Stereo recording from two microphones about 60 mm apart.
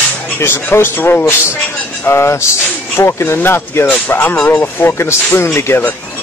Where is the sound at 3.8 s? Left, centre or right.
Left.